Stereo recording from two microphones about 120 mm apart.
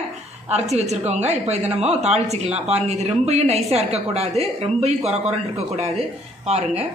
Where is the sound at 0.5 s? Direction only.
65° right (ahead or behind).